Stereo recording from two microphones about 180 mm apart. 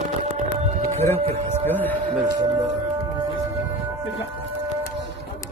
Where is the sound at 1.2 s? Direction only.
35° right (ahead or behind).